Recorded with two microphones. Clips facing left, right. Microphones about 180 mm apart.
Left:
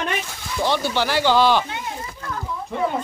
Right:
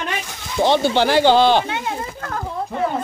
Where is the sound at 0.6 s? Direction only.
25° right (ahead or behind).